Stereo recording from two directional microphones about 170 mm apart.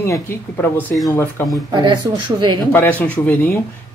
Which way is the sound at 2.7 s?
10° left (ahead or behind).